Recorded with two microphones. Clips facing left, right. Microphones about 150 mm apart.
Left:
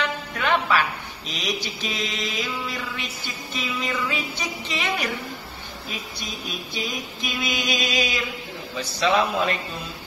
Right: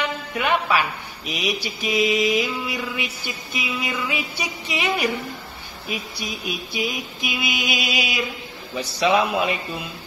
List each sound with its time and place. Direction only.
0.3 s speech: 15° right (ahead or behind)